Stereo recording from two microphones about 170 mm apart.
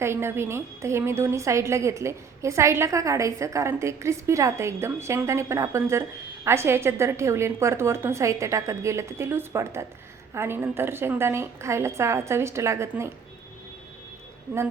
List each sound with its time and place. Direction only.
0.0 s a woman's voice: 15° right (ahead or behind)